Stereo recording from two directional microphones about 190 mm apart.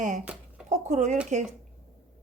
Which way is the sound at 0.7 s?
40° right (ahead or behind).